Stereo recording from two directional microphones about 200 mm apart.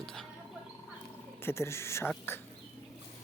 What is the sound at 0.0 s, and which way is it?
Fowl, centre (ahead or behind).